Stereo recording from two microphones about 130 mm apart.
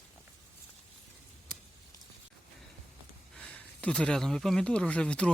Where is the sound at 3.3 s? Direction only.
10° left (ahead or behind).